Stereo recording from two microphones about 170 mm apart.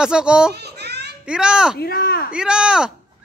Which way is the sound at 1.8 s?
65° left (ahead or behind).